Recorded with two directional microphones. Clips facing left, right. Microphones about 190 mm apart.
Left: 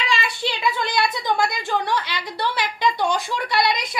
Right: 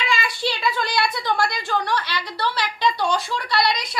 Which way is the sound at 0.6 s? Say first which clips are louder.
Left 2 dB; 20° left (ahead or behind).